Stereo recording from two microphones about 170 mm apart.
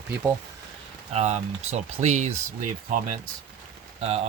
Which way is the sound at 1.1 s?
40° right (ahead or behind).